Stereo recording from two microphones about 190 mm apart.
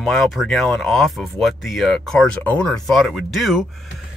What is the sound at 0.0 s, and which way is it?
Speech, centre (ahead or behind).